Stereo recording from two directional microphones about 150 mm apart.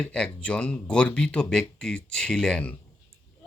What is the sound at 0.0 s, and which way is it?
Speech, 5° left (ahead or behind).